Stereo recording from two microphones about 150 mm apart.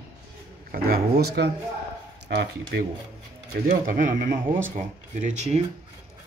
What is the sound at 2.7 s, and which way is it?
Speech, 90° right.